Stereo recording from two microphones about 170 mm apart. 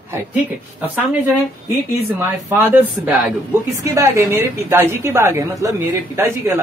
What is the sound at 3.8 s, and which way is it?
A woman's voice, 20° right (ahead or behind).